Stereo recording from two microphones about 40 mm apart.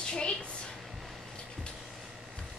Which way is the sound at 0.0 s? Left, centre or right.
Left.